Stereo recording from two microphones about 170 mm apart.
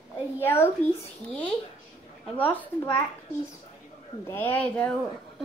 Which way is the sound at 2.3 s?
10° left (ahead or behind).